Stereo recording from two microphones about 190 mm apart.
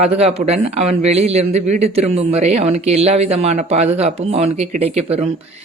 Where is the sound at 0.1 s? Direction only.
30° right (ahead or behind).